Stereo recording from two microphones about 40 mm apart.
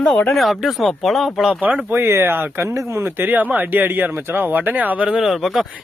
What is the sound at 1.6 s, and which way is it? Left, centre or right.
Speech, right.